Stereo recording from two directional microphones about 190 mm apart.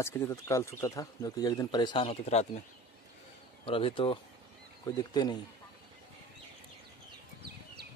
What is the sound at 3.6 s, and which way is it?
Speech, 30° left (ahead or behind).